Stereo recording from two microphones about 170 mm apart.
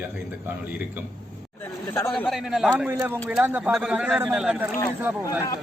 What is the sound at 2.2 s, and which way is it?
A man's voice, centre (ahead or behind).